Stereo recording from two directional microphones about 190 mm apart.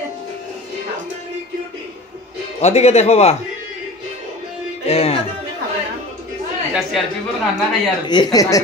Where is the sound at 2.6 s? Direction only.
35° left (ahead or behind).